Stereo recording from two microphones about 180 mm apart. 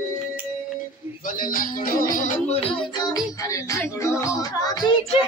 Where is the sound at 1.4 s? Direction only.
50° left (ahead or behind).